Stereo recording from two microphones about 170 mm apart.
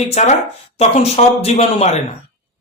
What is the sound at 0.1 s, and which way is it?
A man's voice, 40° left (ahead or behind).